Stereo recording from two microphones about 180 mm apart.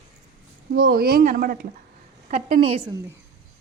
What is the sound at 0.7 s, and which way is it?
Speech, 75° right (ahead or behind).